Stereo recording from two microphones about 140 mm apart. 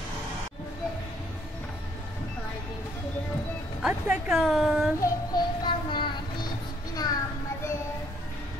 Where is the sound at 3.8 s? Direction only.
5° right (ahead or behind).